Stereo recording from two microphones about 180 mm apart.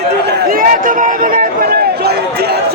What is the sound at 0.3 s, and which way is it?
Run, 50° right (ahead or behind).